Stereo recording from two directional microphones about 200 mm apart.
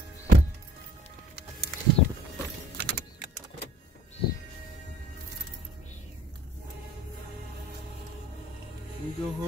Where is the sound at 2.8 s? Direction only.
55° right (ahead or behind).